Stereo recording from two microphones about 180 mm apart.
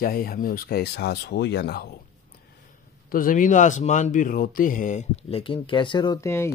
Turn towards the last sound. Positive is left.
turn(degrees=15)  # may be behind; listen again after turning